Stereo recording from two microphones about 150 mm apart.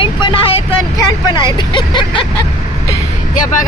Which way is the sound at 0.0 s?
35° left (ahead or behind).